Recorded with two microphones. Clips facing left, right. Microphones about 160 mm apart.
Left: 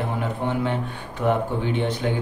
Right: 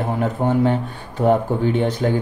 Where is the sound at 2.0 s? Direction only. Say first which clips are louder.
Right 7 dB; 45° right (ahead or behind).